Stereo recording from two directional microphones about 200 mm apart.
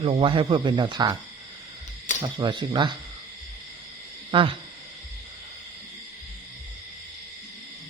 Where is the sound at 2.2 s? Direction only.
25° right (ahead or behind).